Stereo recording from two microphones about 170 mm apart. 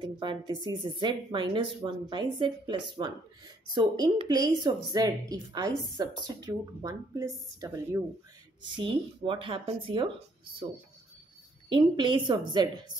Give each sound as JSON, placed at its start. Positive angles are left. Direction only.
{"t": 0.0, "sound": "speech", "side_deg": -30}
{"t": 8.7, "sound": "speech", "side_deg": -30}
{"t": 11.7, "sound": "speech", "side_deg": -30}